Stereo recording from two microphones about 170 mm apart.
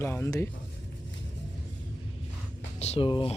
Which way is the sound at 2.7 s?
40° left (ahead or behind).